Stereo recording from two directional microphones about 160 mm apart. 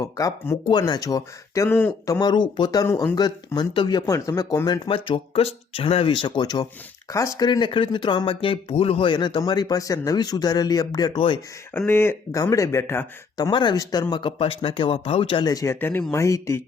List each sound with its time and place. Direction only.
0.0 s speech: 20° left (ahead or behind)
11.7 s speech: 10° left (ahead or behind)
13.3 s speech: 25° left (ahead or behind)